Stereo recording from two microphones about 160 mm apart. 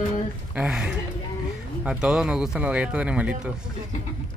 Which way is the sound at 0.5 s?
5° right (ahead or behind).